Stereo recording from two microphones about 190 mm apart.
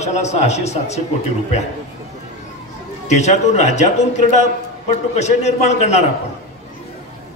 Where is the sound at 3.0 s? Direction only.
35° left (ahead or behind).